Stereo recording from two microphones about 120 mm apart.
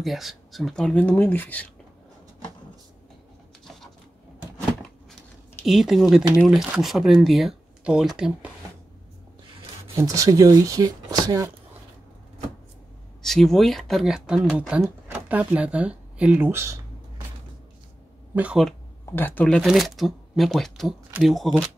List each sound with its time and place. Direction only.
0.0 s speech: centre (ahead or behind); by 1.7 s 15° left (ahead or behind)
5.7 s speech: 5° right (ahead or behind)
9.9 s speech: 25° right (ahead or behind)
13.2 s speech: centre (ahead or behind)
14.8 s speech: 15° right (ahead or behind)
18.3 s speech: 10° right (ahead or behind)
19.1 s speech: 15° left (ahead or behind)
19.4 s speech: centre (ahead or behind)